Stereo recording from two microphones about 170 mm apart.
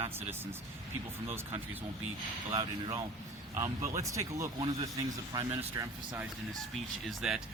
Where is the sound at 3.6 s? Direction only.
15° right (ahead or behind).